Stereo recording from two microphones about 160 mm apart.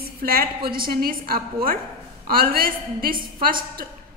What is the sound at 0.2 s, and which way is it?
A woman's voice, 65° right (ahead or behind).